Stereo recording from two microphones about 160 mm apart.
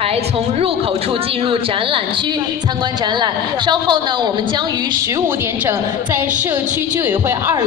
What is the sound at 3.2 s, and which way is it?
Speech, 30° right (ahead or behind).